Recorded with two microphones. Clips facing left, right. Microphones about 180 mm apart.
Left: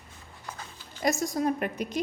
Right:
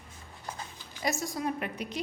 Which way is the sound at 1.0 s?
45° left (ahead or behind).